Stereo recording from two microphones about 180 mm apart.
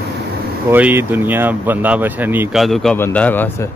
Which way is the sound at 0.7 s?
10° right (ahead or behind).